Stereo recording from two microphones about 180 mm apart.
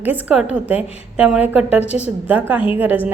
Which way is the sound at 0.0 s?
10° right (ahead or behind).